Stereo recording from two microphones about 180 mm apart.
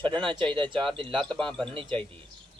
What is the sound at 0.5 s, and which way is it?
Speech, 25° right (ahead or behind).